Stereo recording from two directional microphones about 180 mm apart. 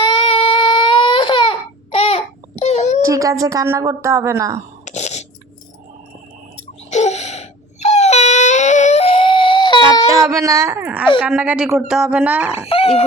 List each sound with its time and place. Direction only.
0.0 s baby cry: 30° left (ahead or behind)
3.0 s speech: 20° right (ahead or behind)
4.9 s a sound: 40° left (ahead or behind)
6.9 s wail: 40° left (ahead or behind)
10.3 s a sound: 15° right (ahead or behind)
11.2 s speech: 5° right (ahead or behind)
12.5 s speech: 30° left (ahead or behind)